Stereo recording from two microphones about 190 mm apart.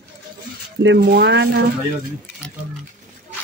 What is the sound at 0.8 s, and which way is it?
Speech, 55° right (ahead or behind).